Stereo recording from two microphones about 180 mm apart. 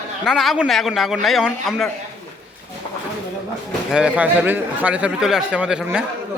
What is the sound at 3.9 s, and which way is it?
A man's voice, 5° right (ahead or behind).